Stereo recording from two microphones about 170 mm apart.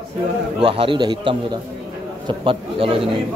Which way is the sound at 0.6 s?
35° right (ahead or behind).